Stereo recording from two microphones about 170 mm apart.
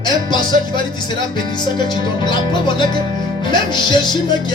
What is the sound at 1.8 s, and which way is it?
Music, 25° left (ahead or behind).